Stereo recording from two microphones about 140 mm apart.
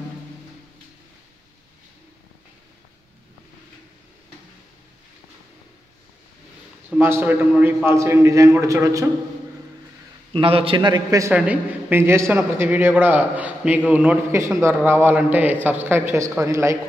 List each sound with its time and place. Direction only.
7.0 s a man's voice: 15° right (ahead or behind)
10.3 s a man's voice: 40° right (ahead or behind); by 11.3 s 25° right (ahead or behind)
11.3 s a man's voice: 10° right (ahead or behind)